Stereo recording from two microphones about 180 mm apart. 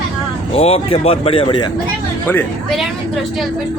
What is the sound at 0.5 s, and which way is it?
Speech, 35° left (ahead or behind).